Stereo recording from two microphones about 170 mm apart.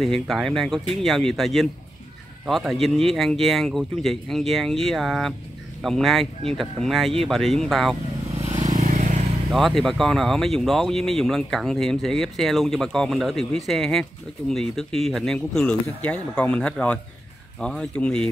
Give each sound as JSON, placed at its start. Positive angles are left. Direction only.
{"t": 0.0, "sound": "speech", "side_deg": 0}
{"t": 8.6, "sound": "vehicle", "side_deg": -45}
{"t": 9.5, "sound": "speech", "side_deg": 0}